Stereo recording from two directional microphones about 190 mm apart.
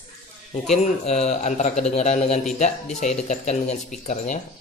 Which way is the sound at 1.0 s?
35° left (ahead or behind).